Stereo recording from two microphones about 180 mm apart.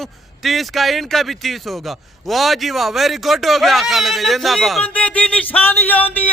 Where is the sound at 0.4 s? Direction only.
Centre (ahead or behind).